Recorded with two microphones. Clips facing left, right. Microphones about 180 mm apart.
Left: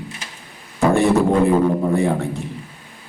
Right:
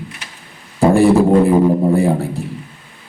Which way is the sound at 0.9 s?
35° right (ahead or behind).